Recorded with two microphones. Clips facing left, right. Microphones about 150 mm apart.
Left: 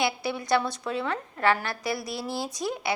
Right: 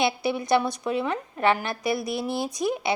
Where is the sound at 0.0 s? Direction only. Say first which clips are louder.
Right 3 dB; 20° right (ahead or behind).